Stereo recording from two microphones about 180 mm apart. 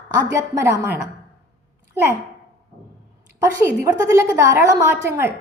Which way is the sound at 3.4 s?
15° right (ahead or behind).